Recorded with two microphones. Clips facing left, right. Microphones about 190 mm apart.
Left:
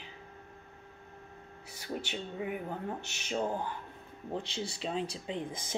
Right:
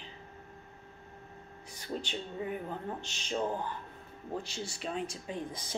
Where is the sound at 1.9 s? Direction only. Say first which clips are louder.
Even; 10° left (ahead or behind).